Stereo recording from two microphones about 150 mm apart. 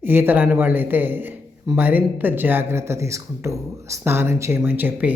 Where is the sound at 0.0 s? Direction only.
15° right (ahead or behind).